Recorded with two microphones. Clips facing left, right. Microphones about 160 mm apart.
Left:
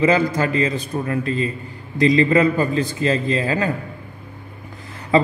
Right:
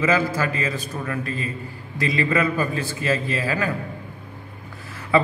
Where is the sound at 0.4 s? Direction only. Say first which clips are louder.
Left 5 dB; 30° left (ahead or behind).